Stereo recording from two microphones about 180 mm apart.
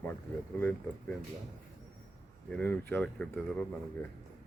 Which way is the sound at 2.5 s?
10° left (ahead or behind).